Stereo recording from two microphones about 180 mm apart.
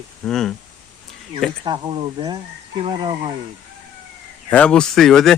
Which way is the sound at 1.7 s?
25° right (ahead or behind).